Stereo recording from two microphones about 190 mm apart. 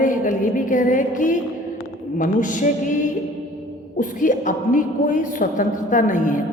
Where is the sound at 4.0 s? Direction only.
45° left (ahead or behind).